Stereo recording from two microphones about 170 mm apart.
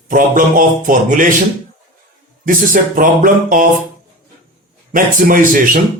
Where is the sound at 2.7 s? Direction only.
55° right (ahead or behind).